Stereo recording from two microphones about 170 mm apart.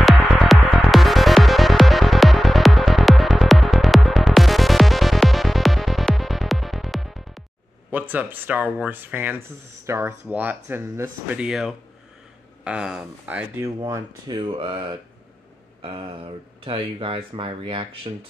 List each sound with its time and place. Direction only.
0.0 s music: centre (ahead or behind)
7.9 s speech: 10° right (ahead or behind)
13.7 s speech: 20° right (ahead or behind)
16.6 s speech: 30° right (ahead or behind)